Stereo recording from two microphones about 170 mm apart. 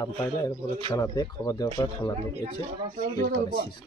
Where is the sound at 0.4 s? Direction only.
15° left (ahead or behind).